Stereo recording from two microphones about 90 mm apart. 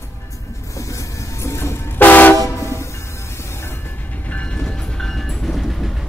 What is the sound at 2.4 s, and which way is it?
Train, 30° left (ahead or behind).